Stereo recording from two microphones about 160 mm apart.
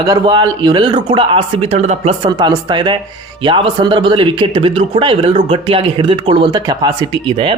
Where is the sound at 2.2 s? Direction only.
25° right (ahead or behind).